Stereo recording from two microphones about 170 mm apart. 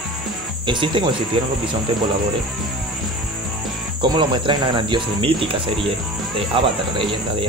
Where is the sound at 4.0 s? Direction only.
25° right (ahead or behind).